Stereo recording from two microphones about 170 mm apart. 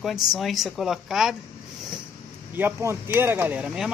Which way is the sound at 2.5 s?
15° right (ahead or behind).